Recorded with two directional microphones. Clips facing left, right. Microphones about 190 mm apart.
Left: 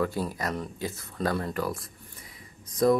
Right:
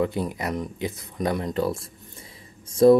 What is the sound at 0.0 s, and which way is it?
Speech, 20° right (ahead or behind).